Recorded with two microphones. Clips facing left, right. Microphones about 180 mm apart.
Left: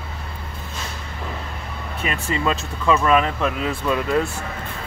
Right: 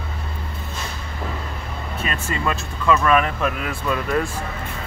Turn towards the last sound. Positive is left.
turn(degrees=15)  # may be behind; listen again after turning